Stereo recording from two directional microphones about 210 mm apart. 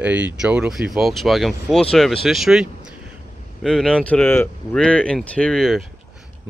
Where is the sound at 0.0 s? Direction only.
5° right (ahead or behind).